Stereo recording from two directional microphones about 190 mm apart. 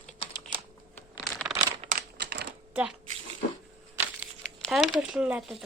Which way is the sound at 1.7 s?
30° right (ahead or behind).